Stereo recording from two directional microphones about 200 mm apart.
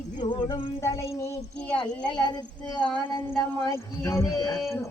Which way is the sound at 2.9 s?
15° left (ahead or behind).